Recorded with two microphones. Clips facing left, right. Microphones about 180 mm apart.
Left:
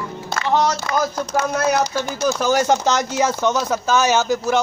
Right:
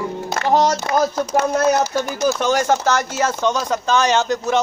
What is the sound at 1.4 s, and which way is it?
Speech, 30° right (ahead or behind).